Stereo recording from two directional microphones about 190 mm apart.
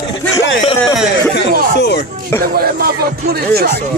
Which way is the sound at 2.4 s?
50° right (ahead or behind).